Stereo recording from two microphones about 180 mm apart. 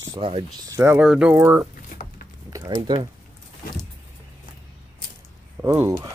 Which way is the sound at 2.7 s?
30° right (ahead or behind).